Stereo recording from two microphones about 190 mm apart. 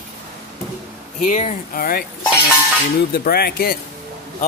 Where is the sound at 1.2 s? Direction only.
40° left (ahead or behind).